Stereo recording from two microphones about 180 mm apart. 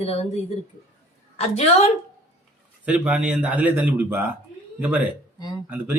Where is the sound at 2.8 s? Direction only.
5° right (ahead or behind).